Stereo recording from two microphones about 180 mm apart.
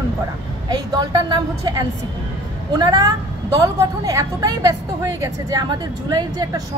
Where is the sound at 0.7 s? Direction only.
20° right (ahead or behind).